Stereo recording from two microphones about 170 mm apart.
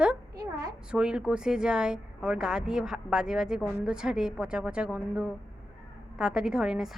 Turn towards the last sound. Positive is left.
turn(degrees=-5)  # may be behind; listen again after turning